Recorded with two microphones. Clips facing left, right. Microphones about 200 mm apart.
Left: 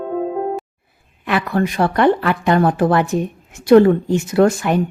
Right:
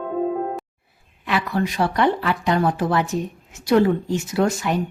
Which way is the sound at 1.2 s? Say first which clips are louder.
Left 4 dB; 55° left (ahead or behind).